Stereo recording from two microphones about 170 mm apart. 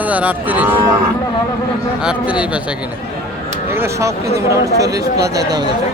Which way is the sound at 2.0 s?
5° right (ahead or behind).